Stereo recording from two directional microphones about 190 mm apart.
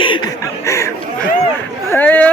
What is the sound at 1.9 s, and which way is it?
Speech, 10° left (ahead or behind).